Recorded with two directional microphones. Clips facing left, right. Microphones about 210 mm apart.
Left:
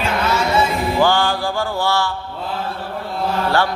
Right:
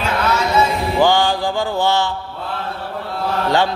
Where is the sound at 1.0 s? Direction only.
15° right (ahead or behind).